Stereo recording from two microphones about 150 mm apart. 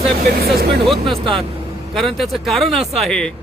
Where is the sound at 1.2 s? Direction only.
35° right (ahead or behind).